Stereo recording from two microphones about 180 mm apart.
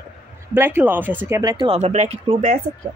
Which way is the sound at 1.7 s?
40° right (ahead or behind).